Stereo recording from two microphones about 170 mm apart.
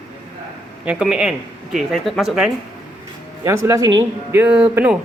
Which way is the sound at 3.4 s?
15° right (ahead or behind).